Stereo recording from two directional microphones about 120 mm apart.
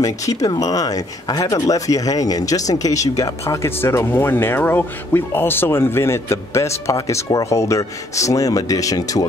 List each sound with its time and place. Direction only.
0.0 s speech: 30° left (ahead or behind)